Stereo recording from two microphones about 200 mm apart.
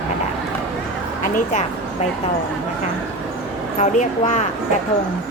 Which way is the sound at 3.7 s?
40° left (ahead or behind).